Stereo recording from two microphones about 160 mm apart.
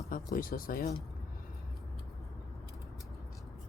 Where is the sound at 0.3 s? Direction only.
60° left (ahead or behind).